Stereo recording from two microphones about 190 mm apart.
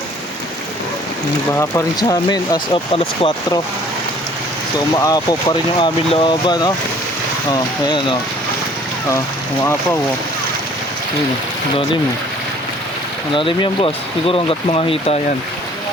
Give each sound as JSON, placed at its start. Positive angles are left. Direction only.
{"t": 1.5, "sound": "speech", "side_deg": 15}
{"t": 5.0, "sound": "speech", "side_deg": 20}
{"t": 13.3, "sound": "speech", "side_deg": 25}